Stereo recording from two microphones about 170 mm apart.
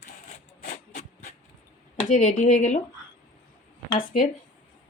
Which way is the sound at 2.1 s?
45° left (ahead or behind).